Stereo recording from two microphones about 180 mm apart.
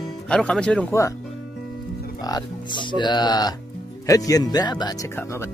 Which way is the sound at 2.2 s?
25° left (ahead or behind).